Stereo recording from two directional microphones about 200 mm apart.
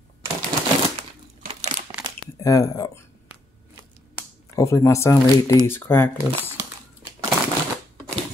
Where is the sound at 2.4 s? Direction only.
15° left (ahead or behind).